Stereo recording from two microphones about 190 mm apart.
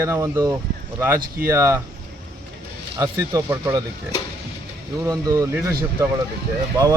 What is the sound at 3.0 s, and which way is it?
Speech, 15° right (ahead or behind).